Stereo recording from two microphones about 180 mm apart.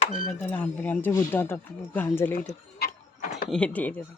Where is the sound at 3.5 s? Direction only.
5° left (ahead or behind).